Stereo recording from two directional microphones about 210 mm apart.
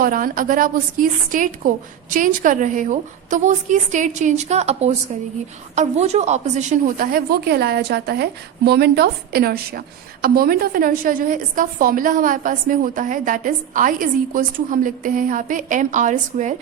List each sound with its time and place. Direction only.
0.0 s a woman's voice: 40° right (ahead or behind)